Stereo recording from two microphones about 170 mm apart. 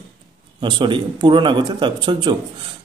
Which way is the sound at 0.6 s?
25° right (ahead or behind).